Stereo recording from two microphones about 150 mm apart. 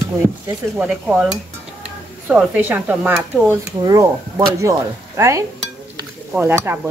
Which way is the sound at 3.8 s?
25° right (ahead or behind).